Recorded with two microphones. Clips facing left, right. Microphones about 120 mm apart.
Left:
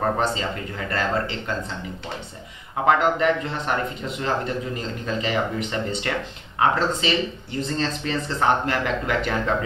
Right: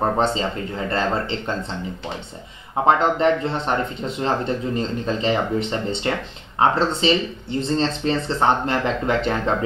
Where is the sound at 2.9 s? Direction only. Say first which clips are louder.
Right 2 dB; 25° right (ahead or behind).